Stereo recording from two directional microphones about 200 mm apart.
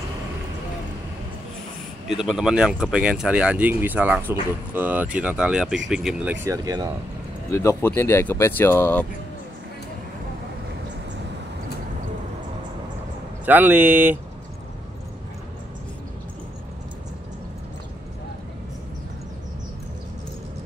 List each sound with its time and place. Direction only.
2.0 s speech: centre (ahead or behind); by 6.9 s 20° right (ahead or behind)
7.5 s speech: 10° left (ahead or behind)
13.5 s speech: 10° right (ahead or behind)